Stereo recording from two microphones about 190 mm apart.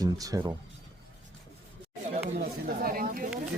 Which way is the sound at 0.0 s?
20° right (ahead or behind).